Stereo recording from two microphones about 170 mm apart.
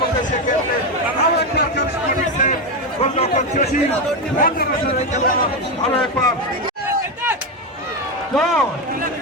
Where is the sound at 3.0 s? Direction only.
40° left (ahead or behind).